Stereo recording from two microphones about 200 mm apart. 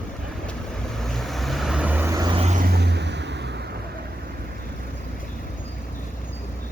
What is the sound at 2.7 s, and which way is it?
Vehicle, 60° right (ahead or behind).